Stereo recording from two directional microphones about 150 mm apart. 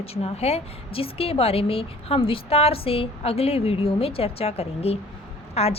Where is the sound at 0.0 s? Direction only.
45° left (ahead or behind).